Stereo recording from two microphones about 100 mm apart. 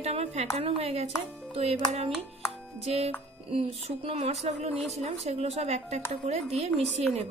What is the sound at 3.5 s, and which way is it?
A woman's voice, 70° right (ahead or behind).